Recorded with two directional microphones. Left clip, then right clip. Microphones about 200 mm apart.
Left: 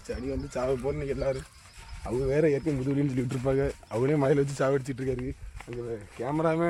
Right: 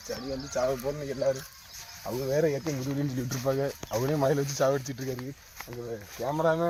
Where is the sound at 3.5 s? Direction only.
10° left (ahead or behind).